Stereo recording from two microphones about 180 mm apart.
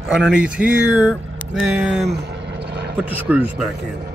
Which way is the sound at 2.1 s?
70° right (ahead or behind).